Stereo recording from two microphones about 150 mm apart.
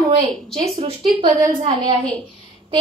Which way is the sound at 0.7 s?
40° right (ahead or behind).